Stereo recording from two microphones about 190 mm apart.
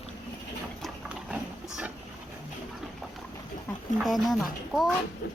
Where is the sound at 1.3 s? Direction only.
10° right (ahead or behind).